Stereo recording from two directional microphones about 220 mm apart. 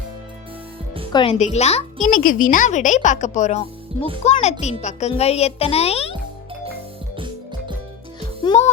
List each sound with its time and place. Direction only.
1.1 s a child's voice: 25° left (ahead or behind)
8.5 s a child's voice: 20° left (ahead or behind)